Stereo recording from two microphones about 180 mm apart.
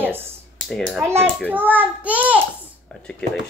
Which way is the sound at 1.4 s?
10° right (ahead or behind).